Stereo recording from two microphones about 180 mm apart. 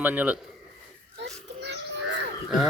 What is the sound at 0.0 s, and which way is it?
Speech, 10° right (ahead or behind).